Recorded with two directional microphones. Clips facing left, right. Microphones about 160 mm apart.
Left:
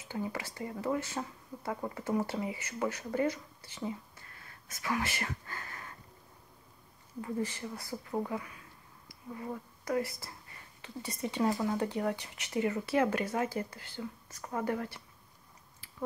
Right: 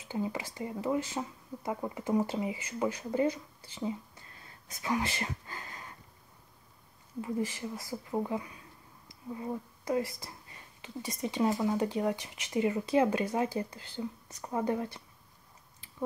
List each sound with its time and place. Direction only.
0.1 s speech: 15° right (ahead or behind)
4.4 s a sound: 20° right (ahead or behind)
7.2 s a woman's voice: 20° right (ahead or behind)